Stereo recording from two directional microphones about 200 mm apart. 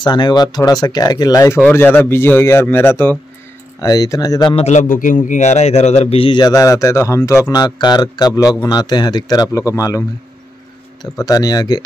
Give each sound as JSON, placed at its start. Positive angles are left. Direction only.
{"t": 0.0, "sound": "a man's voice", "side_deg": 20}
{"t": 4.6, "sound": "a man's voice", "side_deg": 40}